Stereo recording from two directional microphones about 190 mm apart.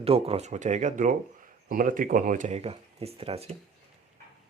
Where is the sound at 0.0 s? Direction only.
30° right (ahead or behind).